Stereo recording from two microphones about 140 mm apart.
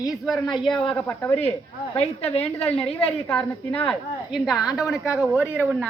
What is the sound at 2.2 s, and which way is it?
Speech, 50° left (ahead or behind).